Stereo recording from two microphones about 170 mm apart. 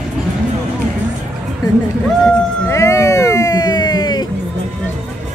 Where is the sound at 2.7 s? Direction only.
20° left (ahead or behind).